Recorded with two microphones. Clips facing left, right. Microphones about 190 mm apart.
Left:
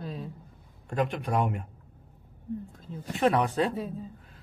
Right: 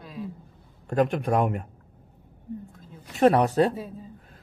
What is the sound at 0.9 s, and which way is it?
Speech, 45° right (ahead or behind).